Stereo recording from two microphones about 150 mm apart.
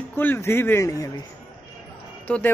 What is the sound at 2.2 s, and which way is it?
Speech, 10° left (ahead or behind).